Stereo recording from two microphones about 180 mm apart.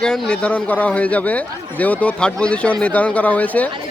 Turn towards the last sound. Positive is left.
turn(degrees=10)  # may be behind; listen again after turning